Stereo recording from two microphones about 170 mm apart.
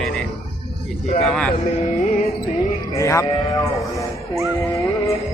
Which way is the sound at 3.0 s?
20° left (ahead or behind).